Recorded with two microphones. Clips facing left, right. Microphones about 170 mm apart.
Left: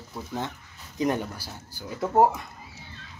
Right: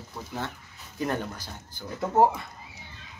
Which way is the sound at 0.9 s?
15° left (ahead or behind).